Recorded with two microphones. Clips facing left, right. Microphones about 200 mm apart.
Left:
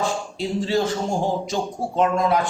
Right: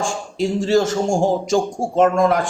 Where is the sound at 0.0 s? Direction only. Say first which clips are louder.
Right 3 dB; 45° right (ahead or behind).